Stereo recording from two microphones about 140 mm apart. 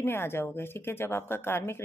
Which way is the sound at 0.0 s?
15° left (ahead or behind).